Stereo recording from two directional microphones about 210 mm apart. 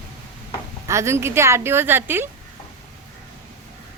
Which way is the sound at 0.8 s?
15° right (ahead or behind).